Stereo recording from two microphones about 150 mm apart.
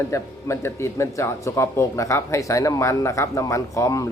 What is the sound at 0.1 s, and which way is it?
Speech, 20° left (ahead or behind).